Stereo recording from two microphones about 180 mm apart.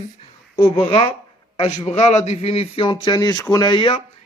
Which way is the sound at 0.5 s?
30° left (ahead or behind).